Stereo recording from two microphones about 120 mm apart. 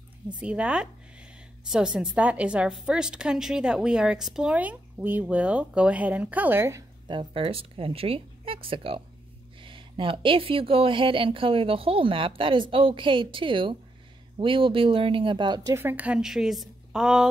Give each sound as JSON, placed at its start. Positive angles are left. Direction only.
{"t": 0.4, "sound": "a woman's voice", "side_deg": -10}
{"t": 7.1, "sound": "speech", "side_deg": -45}
{"t": 15.7, "sound": "a woman's voice", "side_deg": -15}